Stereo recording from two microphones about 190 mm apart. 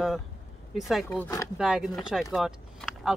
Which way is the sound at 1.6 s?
5° right (ahead or behind).